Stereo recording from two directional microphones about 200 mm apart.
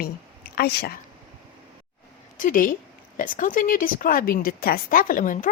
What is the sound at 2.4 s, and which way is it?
A woman's voice, 45° left (ahead or behind).